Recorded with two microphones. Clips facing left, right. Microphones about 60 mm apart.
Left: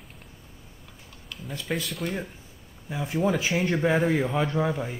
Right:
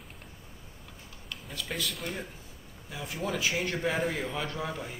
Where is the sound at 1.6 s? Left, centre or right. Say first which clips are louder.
Left 6 dB; centre.